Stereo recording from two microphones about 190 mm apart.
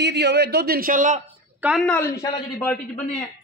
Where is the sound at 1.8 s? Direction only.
10° left (ahead or behind).